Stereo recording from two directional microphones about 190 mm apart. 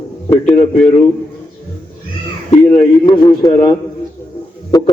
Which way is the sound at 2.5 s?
30° left (ahead or behind).